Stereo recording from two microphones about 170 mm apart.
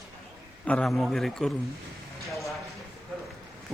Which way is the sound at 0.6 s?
5° left (ahead or behind).